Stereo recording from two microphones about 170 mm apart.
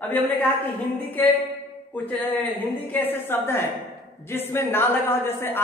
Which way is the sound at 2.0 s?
10° left (ahead or behind).